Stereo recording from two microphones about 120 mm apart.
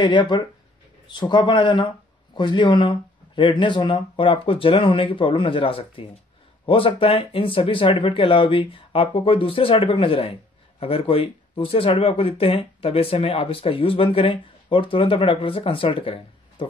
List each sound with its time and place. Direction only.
0.0 s speech: 40° left (ahead or behind)